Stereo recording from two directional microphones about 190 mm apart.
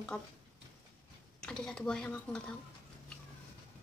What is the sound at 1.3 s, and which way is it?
A woman's voice, 5° left (ahead or behind).